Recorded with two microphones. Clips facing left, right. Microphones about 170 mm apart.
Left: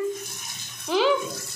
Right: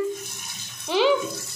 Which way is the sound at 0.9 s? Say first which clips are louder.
Right 1 dB; centre (ahead or behind).